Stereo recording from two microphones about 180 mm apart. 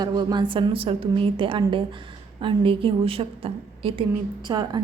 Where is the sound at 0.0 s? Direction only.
25° right (ahead or behind).